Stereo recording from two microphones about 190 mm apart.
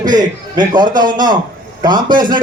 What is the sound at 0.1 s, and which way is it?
A man's voice, 20° right (ahead or behind).